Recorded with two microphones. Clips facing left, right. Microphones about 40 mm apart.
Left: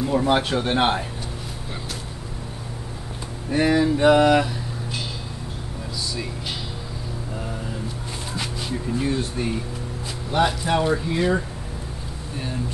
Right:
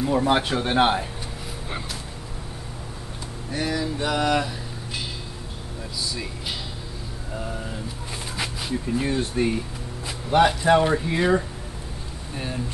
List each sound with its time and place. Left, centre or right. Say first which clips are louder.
0.0 s speech: left 1 dB; centre
3.4 s speech: left 8 dB; left; by 4.6 s centre
8.4 s speech: right 1 dB; centre
10.3 s speech: right 4 dB; centre